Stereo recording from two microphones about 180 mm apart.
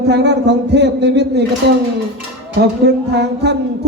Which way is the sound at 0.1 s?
70° right (ahead or behind).